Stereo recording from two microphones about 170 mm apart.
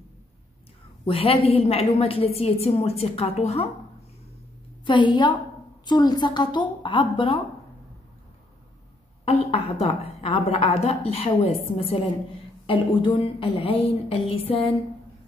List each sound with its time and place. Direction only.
1.0 s a woman's voice: 35° left (ahead or behind)
4.8 s a woman's voice: 25° left (ahead or behind)
9.2 s a woman's voice: 35° left (ahead or behind)